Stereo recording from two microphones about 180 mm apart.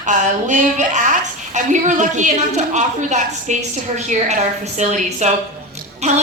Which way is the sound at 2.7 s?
40° right (ahead or behind).